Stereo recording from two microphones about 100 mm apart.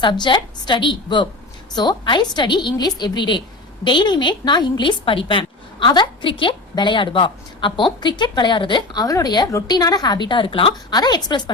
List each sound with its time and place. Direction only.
0.0 s a woman's voice: 50° left (ahead or behind)
10.9 s a woman's voice: 45° left (ahead or behind)